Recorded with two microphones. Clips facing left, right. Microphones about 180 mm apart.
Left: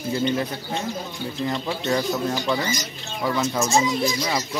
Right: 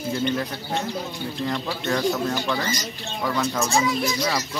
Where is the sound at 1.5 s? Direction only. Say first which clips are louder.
Left 2 dB; 15° left (ahead or behind).